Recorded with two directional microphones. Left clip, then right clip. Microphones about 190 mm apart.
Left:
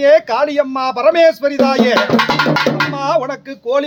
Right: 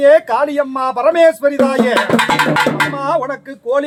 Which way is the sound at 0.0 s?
20° left (ahead or behind).